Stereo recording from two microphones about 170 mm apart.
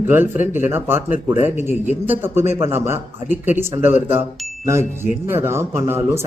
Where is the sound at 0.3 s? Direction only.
45° left (ahead or behind).